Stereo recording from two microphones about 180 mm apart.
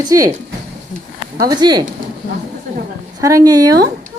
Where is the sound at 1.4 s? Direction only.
25° right (ahead or behind).